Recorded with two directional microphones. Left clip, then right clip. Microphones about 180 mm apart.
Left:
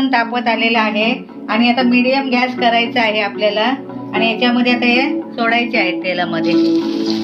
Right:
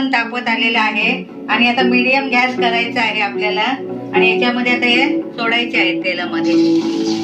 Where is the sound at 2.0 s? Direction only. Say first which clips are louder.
Right 1 dB; 60° left (ahead or behind).